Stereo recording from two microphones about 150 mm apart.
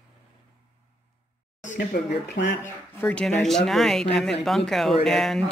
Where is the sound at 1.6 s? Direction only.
65° left (ahead or behind).